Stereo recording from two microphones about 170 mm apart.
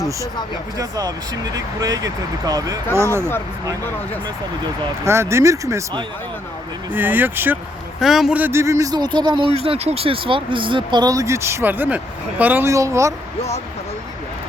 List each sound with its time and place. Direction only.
0.8 s speech: 20° right (ahead or behind)
5.0 s speech: 15° right (ahead or behind)
6.9 s speech: 10° right (ahead or behind)
9.6 s speech: 35° right (ahead or behind); by 13.1 s 15° right (ahead or behind)